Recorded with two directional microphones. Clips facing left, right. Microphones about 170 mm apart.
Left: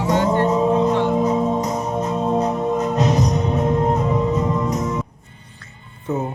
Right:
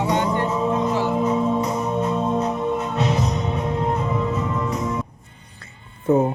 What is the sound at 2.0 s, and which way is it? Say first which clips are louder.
Music: left 3 dB; 40° left (ahead or behind).